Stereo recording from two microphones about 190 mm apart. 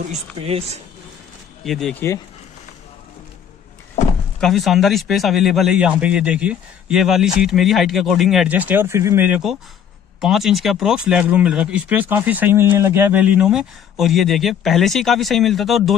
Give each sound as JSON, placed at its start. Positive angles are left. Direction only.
{"t": 0.1, "sound": "speech", "side_deg": -30}
{"t": 1.6, "sound": "speech", "side_deg": 0}
{"t": 4.4, "sound": "speech", "side_deg": 0}